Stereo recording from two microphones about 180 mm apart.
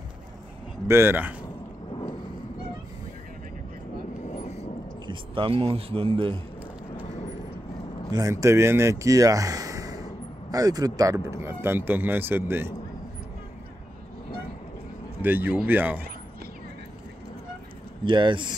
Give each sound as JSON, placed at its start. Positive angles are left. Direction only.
{"t": 0.8, "sound": "speech", "side_deg": -15}
{"t": 5.0, "sound": "a man's voice", "side_deg": -25}
{"t": 8.1, "sound": "speech", "side_deg": -20}
{"t": 15.2, "sound": "speech", "side_deg": -10}
{"t": 18.0, "sound": "speech", "side_deg": -25}